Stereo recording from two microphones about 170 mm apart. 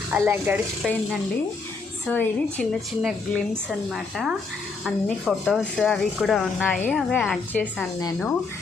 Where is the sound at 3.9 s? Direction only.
Centre (ahead or behind).